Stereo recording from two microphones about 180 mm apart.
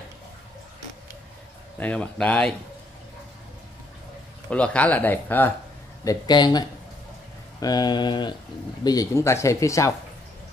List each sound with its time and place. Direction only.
1.8 s speech: 5° left (ahead or behind)
4.5 s speech: 5° left (ahead or behind)
6.0 s speech: 25° left (ahead or behind)